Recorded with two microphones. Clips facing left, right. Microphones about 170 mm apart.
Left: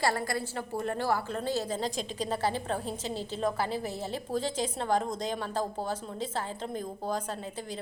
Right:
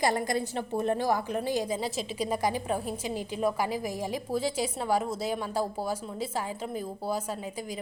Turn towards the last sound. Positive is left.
turn(degrees=-10)  # may be behind; listen again after turning